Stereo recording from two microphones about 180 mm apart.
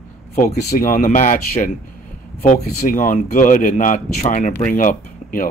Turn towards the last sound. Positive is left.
turn(degrees=50)  # may be behind; listen again after turning